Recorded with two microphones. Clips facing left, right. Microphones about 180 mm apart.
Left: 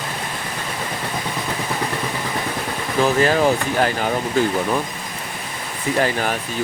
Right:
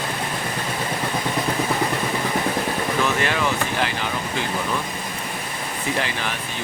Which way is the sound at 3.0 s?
40° left (ahead or behind).